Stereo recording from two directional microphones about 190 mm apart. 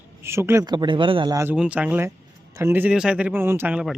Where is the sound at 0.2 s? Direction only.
15° right (ahead or behind).